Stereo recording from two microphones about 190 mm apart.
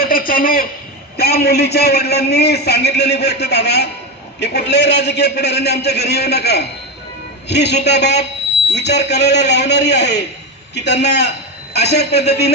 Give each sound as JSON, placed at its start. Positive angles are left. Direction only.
{"t": 0.0, "sound": "a man's voice", "side_deg": 50}